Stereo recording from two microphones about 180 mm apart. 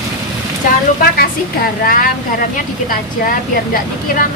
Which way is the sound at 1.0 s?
55° left (ahead or behind).